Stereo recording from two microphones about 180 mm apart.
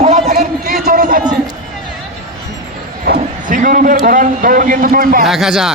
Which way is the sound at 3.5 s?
45° right (ahead or behind).